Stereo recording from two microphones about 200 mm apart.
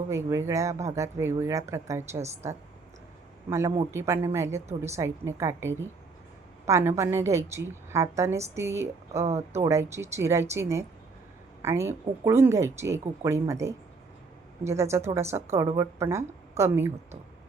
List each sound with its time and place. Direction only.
0.1 s speech: 15° right (ahead or behind)